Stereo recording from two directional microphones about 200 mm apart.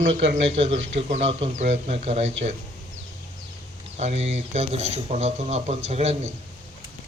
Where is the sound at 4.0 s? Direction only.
35° right (ahead or behind).